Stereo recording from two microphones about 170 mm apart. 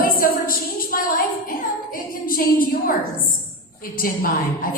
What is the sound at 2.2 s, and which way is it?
Speech, 55° left (ahead or behind).